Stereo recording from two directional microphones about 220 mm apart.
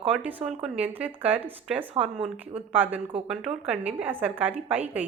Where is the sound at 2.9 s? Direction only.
25° right (ahead or behind).